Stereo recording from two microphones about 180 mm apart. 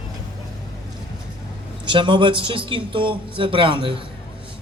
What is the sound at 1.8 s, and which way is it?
A man's voice, 25° right (ahead or behind).